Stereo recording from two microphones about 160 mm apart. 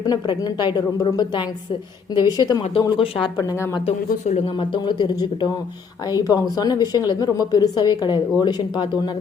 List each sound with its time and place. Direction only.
0.0 s a woman's voice: 25° left (ahead or behind)
3.8 s speech: 40° left (ahead or behind)
4.9 s a woman's voice: 25° left (ahead or behind)